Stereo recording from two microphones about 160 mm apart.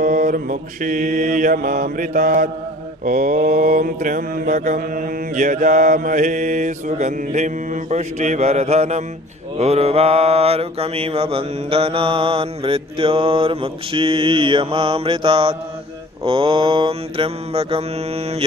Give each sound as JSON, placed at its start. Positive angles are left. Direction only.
{"t": 0.0, "sound": "mantra", "side_deg": -55}